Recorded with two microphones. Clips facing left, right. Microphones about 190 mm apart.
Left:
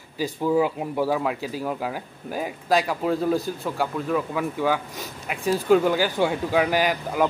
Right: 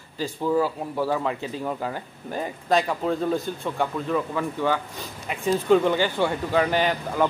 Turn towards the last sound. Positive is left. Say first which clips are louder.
# even
turn(degrees=10)  # may be behind; listen again after turning